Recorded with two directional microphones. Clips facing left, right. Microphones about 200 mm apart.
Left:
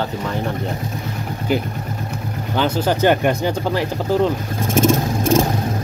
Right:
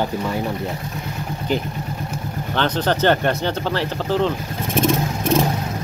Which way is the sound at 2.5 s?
10° left (ahead or behind).